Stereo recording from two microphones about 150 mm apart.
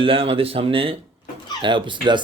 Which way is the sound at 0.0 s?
40° right (ahead or behind).